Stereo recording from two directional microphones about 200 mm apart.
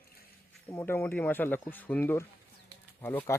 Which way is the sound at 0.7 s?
10° left (ahead or behind).